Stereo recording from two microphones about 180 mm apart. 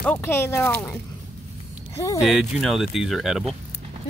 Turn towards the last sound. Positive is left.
turn(degrees=0)  # may be behind; listen again after turning